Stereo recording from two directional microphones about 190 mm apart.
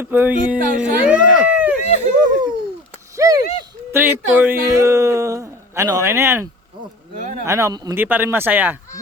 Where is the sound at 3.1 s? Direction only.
20° right (ahead or behind).